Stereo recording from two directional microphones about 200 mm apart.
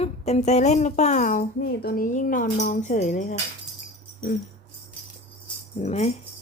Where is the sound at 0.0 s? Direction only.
30° left (ahead or behind).